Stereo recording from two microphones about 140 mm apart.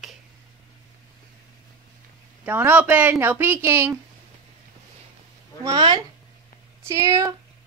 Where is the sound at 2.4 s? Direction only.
10° right (ahead or behind).